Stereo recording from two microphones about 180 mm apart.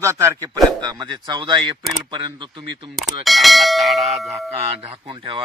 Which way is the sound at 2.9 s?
Centre (ahead or behind).